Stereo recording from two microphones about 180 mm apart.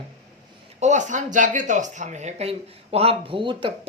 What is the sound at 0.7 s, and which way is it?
Speech, 40° right (ahead or behind).